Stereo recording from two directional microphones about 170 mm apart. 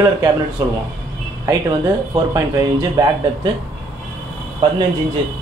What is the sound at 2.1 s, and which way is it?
Speech, 20° right (ahead or behind).